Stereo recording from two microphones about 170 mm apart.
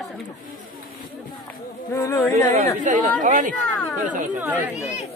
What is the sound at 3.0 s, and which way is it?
Speech, 50° right (ahead or behind).